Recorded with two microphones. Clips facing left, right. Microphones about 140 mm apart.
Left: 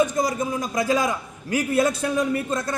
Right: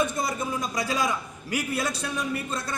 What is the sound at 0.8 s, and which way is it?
A man's voice, 45° left (ahead or behind).